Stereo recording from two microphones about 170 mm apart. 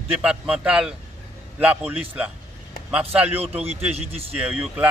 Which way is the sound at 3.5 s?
40° right (ahead or behind).